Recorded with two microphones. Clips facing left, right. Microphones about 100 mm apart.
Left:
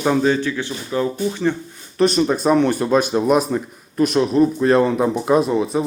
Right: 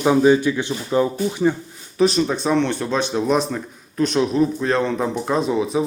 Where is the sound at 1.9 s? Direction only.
Centre (ahead or behind).